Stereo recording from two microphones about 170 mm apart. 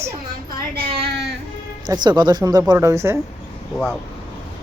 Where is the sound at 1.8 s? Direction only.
25° right (ahead or behind).